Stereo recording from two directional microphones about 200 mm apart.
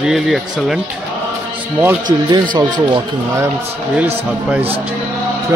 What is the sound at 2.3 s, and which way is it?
Speech, 20° right (ahead or behind).